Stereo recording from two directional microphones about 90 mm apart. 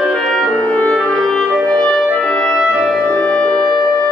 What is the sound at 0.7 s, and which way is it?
Music, 15° left (ahead or behind).